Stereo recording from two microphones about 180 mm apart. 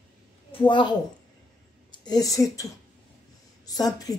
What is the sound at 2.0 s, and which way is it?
Speech, 20° left (ahead or behind).